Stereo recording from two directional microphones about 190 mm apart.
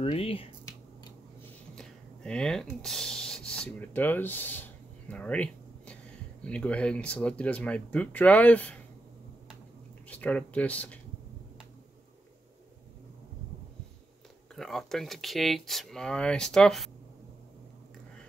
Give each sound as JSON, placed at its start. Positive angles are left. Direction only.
{"t": 0.0, "sound": "speech", "side_deg": 30}
{"t": 1.8, "sound": "rub", "side_deg": 5}
{"t": 6.4, "sound": "speech", "side_deg": 5}
{"t": 10.0, "sound": "speech", "side_deg": 5}
{"t": 14.5, "sound": "speech", "side_deg": 0}